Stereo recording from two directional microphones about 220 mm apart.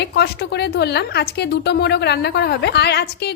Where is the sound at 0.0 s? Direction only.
50° left (ahead or behind).